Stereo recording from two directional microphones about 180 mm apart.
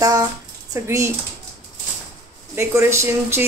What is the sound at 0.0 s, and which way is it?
A woman's voice, 20° right (ahead or behind).